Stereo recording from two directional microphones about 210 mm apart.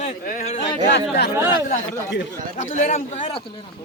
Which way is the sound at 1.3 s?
10° right (ahead or behind).